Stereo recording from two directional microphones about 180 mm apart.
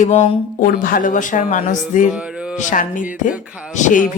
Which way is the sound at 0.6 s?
50° left (ahead or behind).